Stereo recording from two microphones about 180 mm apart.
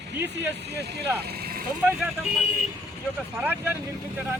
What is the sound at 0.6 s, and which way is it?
Speech, 65° right (ahead or behind).